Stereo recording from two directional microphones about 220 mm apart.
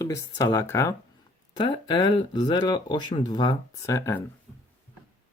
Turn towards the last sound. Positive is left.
turn(degrees=15)  # may be behind; listen again after turning